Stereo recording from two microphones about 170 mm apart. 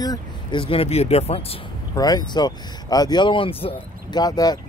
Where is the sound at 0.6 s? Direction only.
35° left (ahead or behind).